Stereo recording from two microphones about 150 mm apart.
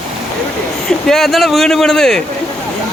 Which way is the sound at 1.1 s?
Centre (ahead or behind).